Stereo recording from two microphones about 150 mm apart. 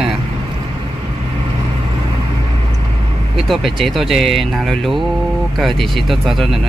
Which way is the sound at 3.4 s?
Centre (ahead or behind).